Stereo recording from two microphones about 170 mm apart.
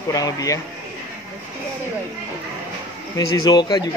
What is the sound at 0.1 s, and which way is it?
Speech, 20° left (ahead or behind).